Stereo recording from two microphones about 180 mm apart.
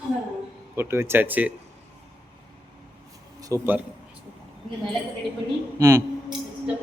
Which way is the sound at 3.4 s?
15° right (ahead or behind).